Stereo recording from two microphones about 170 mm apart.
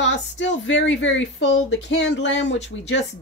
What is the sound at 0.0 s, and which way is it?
Speech, 90° left.